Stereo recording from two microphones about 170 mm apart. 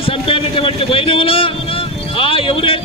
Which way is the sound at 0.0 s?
35° left (ahead or behind).